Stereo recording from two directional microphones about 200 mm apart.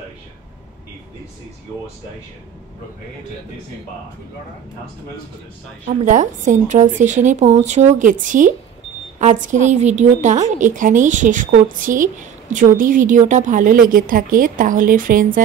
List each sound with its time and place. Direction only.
6.0 s a woman's voice: 40° right (ahead or behind)